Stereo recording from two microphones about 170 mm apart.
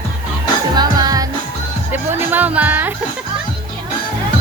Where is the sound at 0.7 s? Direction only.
25° right (ahead or behind).